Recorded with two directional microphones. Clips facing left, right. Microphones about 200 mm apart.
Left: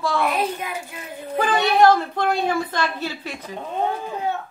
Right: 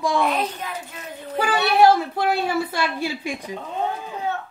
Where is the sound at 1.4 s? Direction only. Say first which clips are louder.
Even; 10° right (ahead or behind).